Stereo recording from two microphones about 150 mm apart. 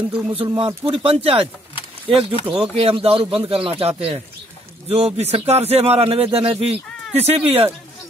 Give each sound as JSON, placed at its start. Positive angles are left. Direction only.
{"t": 0.3, "sound": "a man's voice", "side_deg": -35}